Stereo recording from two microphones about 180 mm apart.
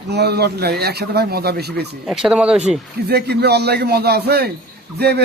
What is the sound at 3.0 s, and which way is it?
A man's voice, 65° right (ahead or behind).